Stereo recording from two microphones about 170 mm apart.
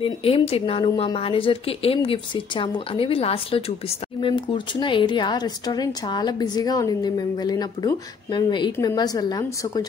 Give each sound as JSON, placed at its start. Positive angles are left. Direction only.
{"t": 0.0, "sound": "a woman's voice", "side_deg": 35}